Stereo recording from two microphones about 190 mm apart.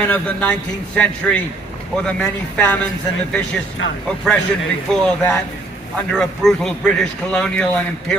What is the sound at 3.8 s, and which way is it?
Speech, 75° left (ahead or behind).